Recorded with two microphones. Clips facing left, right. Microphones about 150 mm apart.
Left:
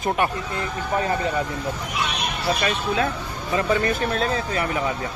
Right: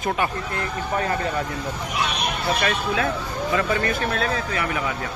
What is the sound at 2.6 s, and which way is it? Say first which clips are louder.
Speech: left 1 dB; 25° left (ahead or behind).